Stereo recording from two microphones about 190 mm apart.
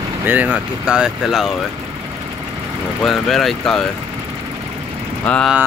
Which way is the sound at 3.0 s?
Centre (ahead or behind).